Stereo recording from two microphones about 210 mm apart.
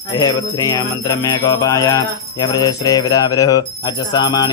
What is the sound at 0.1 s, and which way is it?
Jingle bell, 20° left (ahead or behind).